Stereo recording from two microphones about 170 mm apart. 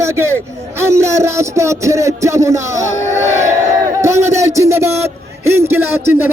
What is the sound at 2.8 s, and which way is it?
Speech, 45° left (ahead or behind).